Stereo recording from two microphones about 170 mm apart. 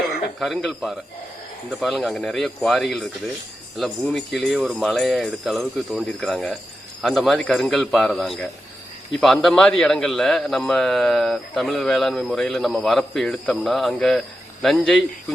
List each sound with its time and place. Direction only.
0.3 s a man's voice: centre (ahead or behind)